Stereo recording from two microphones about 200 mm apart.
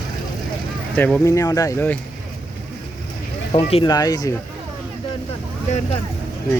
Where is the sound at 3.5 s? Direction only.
25° left (ahead or behind).